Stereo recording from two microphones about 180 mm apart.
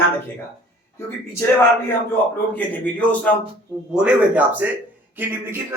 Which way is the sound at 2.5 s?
10° left (ahead or behind).